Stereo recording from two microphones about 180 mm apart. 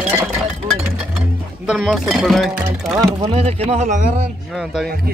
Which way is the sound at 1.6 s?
5° right (ahead or behind).